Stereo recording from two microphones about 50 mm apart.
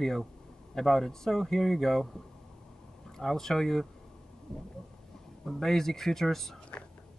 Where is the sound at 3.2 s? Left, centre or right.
Centre.